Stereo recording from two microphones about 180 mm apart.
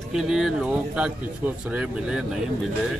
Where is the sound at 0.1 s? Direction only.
Centre (ahead or behind).